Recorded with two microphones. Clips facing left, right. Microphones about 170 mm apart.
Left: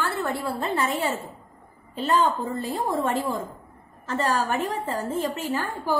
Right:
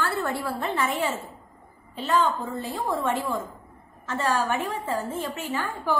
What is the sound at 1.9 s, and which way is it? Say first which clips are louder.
Speech: left 1 dB; 40° left (ahead or behind).